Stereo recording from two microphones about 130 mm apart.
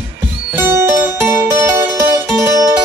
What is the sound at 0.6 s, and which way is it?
Music, 20° right (ahead or behind).